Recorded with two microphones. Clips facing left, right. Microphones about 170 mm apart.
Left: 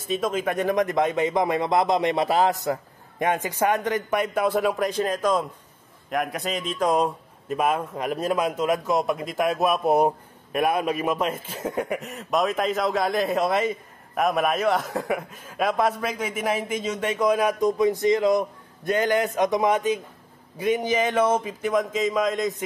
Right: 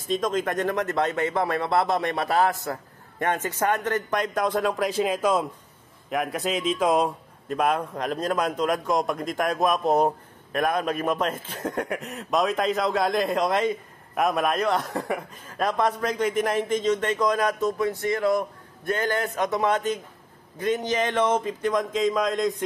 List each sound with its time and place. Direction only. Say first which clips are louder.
0.1 s a man's voice: even; 10° left (ahead or behind)